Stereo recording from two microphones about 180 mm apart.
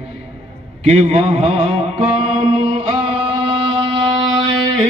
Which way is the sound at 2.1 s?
35° right (ahead or behind).